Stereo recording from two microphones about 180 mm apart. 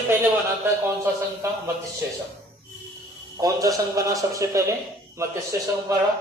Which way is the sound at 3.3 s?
20° right (ahead or behind).